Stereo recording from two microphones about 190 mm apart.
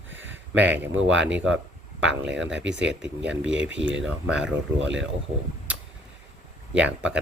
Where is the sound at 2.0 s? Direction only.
75° right (ahead or behind).